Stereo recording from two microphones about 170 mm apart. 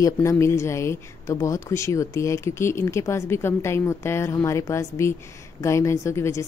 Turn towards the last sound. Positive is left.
turn(degrees=15)  # may be behind; listen again after turning